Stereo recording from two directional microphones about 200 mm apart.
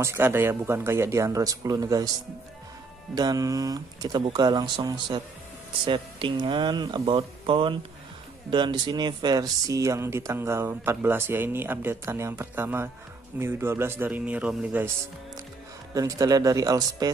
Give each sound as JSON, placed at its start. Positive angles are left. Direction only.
{"t": 0.0, "sound": "speech", "side_deg": -10}
{"t": 3.2, "sound": "speech", "side_deg": -20}
{"t": 15.9, "sound": "speech", "side_deg": -15}